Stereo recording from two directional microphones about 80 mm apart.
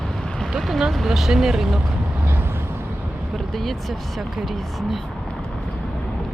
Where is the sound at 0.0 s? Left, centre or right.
Centre.